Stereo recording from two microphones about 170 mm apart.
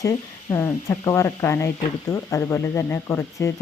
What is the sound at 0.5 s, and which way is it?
Speech, 20° left (ahead or behind).